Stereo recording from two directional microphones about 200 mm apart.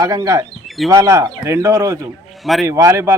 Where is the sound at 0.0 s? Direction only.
15° right (ahead or behind).